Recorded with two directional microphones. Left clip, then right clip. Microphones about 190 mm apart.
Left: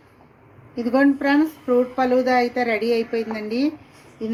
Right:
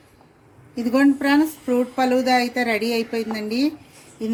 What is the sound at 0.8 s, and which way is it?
A woman's voice, 45° right (ahead or behind).